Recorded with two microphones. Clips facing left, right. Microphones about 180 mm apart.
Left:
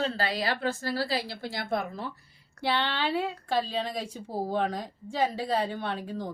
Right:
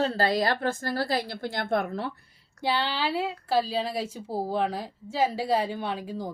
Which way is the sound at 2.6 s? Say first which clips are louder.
Right 1 dB; 10° right (ahead or behind).